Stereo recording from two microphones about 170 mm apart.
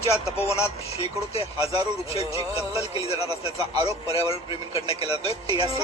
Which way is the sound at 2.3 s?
20° right (ahead or behind).